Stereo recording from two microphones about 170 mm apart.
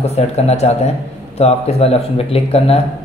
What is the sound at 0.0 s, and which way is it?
A man's voice, 40° left (ahead or behind).